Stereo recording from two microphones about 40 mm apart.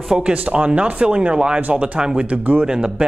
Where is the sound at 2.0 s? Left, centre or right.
Centre.